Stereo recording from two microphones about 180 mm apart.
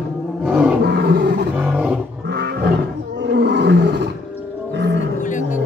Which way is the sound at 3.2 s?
70° right (ahead or behind).